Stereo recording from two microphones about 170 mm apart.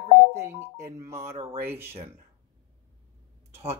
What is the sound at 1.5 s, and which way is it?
Speech, 15° right (ahead or behind).